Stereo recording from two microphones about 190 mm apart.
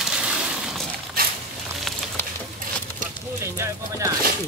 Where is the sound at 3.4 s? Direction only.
15° right (ahead or behind).